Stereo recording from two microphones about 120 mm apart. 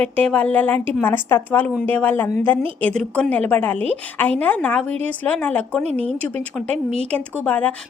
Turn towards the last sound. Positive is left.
turn(degrees=15)  # may be behind; listen again after turning